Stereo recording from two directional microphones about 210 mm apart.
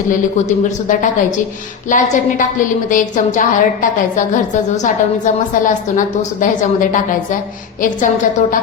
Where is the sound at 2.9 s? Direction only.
40° left (ahead or behind).